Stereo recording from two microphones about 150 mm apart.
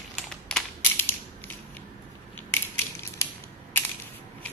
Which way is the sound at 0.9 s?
15° left (ahead or behind).